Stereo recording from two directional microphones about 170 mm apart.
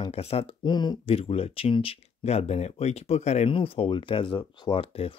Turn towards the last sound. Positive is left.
turn(degrees=35)  # may be behind; listen again after turning